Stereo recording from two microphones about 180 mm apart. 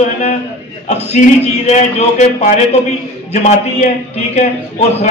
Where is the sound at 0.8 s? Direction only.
40° left (ahead or behind).